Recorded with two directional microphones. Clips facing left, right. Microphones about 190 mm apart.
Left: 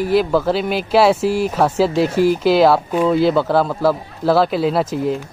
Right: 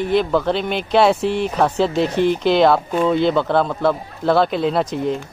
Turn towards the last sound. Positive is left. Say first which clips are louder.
# left 1 dB
turn(degrees=5)  # may be behind; listen again after turning